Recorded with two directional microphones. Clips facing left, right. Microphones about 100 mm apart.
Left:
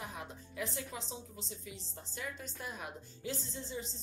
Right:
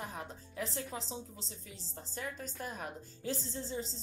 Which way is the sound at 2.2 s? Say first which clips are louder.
Right 2 dB; 40° right (ahead or behind).